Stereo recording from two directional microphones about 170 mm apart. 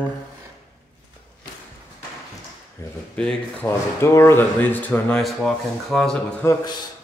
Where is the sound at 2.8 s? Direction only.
15° left (ahead or behind).